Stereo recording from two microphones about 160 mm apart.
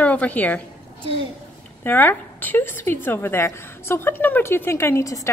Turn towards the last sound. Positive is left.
turn(degrees=20)  # may be behind; listen again after turning